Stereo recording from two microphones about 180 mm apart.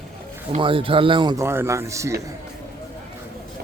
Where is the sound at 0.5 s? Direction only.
30° right (ahead or behind).